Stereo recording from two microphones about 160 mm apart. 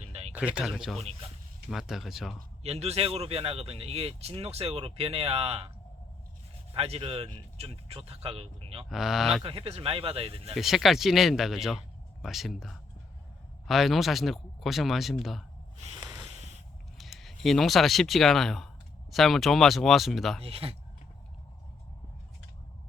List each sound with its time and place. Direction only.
0.0 s a sound: 40° right (ahead or behind)
0.3 s speech: 5° right (ahead or behind)
0.9 s speech: 40° right (ahead or behind)
1.7 s speech: centre (ahead or behind)
2.6 s speech: 40° right (ahead or behind)
6.7 s speech: 40° right (ahead or behind)
8.9 s speech: 5° right (ahead or behind)
9.4 s speech: 35° right (ahead or behind)
10.5 s speech: centre (ahead or behind)
16.0 s a sound: 20° right (ahead or behind)
17.0 s speech: centre (ahead or behind)
20.4 s speech: 35° right (ahead or behind)